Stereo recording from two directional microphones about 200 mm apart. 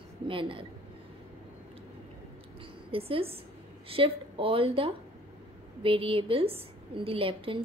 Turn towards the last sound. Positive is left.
turn(degrees=-25)  # may be behind; listen again after turning